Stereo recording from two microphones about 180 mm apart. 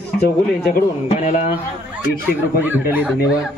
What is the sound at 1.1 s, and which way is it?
Speech, 40° left (ahead or behind).